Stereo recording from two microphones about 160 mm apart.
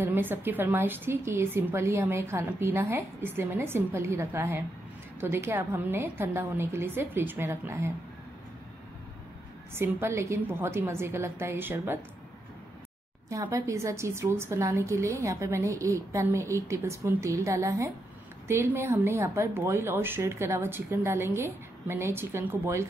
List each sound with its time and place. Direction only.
0.0 s a woman's voice: 15° right (ahead or behind)
9.8 s a woman's voice: 15° right (ahead or behind)
13.3 s a woman's voice: 20° right (ahead or behind)